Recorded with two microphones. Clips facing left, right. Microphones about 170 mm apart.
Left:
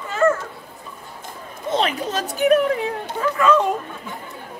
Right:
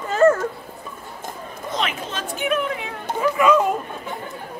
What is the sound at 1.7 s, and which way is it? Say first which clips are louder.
Speech: left 5 dB; 35° left (ahead or behind).